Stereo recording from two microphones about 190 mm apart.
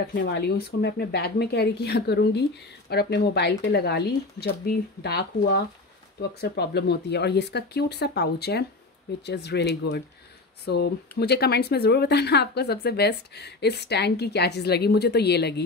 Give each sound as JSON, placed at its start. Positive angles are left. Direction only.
{"t": 0.0, "sound": "speech", "side_deg": 60}